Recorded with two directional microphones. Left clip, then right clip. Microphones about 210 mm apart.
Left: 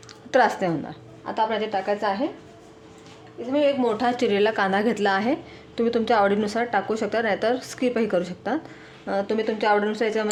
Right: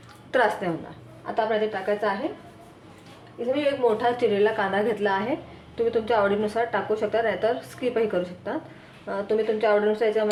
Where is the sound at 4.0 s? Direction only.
50° left (ahead or behind).